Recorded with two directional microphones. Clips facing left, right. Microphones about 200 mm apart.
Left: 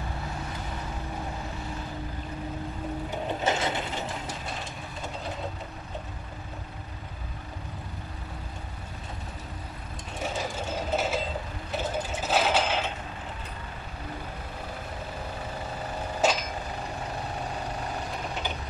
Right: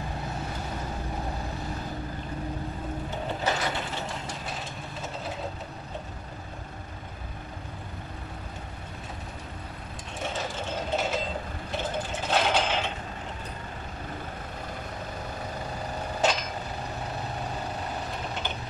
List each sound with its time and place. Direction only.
3.4 s mechanisms: 25° left (ahead or behind)
10.2 s vehicle: 5° left (ahead or behind)
11.7 s sewing machine: 5° left (ahead or behind)
16.2 s a sound: 5° left (ahead or behind)
18.3 s vehicle: centre (ahead or behind)